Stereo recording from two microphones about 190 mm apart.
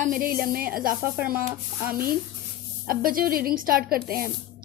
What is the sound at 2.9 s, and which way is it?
Speech, 50° right (ahead or behind).